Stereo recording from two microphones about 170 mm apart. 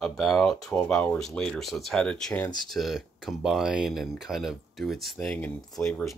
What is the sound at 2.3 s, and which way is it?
Speech, 15° left (ahead or behind).